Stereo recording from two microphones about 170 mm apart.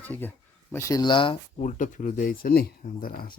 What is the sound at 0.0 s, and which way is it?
Speech, 10° left (ahead or behind).